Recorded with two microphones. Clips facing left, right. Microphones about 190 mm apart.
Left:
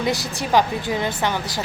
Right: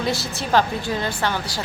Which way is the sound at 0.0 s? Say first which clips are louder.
Left 1 dB; 15° left (ahead or behind).